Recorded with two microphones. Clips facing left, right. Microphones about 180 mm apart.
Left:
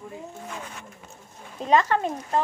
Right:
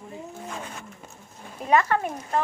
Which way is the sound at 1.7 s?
25° left (ahead or behind).